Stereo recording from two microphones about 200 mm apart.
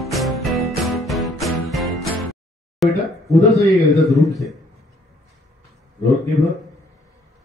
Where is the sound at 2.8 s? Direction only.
Centre (ahead or behind).